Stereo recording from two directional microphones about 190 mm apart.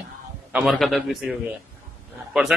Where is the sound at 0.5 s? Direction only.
Centre (ahead or behind).